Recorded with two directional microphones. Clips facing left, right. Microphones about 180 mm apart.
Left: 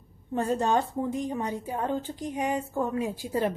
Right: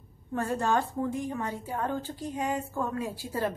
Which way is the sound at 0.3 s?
20° left (ahead or behind).